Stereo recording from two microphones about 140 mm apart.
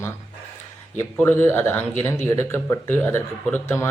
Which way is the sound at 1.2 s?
15° left (ahead or behind).